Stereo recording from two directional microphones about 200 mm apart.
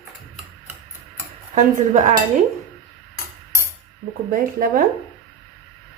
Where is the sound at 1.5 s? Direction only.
35° right (ahead or behind).